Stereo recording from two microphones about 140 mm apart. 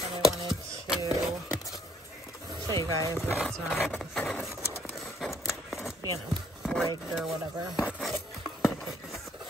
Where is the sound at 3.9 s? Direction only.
Centre (ahead or behind).